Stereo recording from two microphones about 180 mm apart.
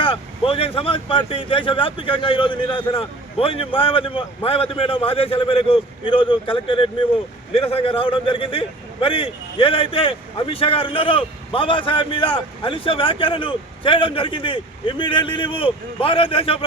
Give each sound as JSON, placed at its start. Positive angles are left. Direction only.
{"t": 0.0, "sound": "a man's voice", "side_deg": 30}